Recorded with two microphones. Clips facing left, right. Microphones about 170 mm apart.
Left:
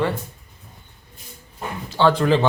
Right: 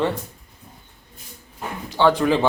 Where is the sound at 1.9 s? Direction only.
15° right (ahead or behind).